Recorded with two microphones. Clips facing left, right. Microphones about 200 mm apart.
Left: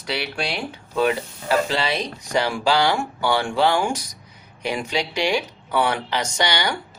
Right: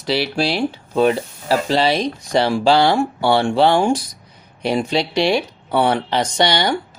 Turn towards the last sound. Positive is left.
turn(degrees=-30)  # may be behind; listen again after turning